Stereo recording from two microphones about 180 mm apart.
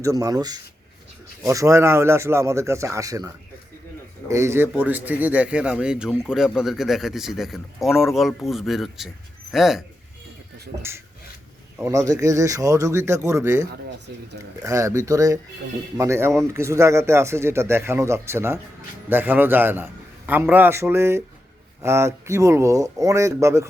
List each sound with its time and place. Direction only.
0.0 s a man's voice: 20° right (ahead or behind); by 9.8 s centre (ahead or behind)
11.8 s a man's voice: 15° right (ahead or behind)